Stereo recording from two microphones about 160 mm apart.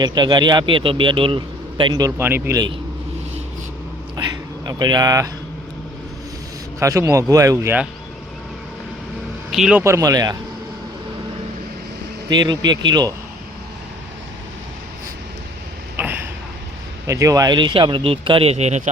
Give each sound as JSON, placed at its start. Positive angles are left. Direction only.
{"t": 0.0, "sound": "speech", "side_deg": -25}
{"t": 4.6, "sound": "speech", "side_deg": -25}
{"t": 6.7, "sound": "speech", "side_deg": -20}
{"t": 9.5, "sound": "a man's voice", "side_deg": -5}
{"t": 9.8, "sound": "speech", "side_deg": -20}
{"t": 12.3, "sound": "speech", "side_deg": -25}
{"t": 16.0, "sound": "a sound", "side_deg": -15}
{"t": 17.1, "sound": "speech", "side_deg": -20}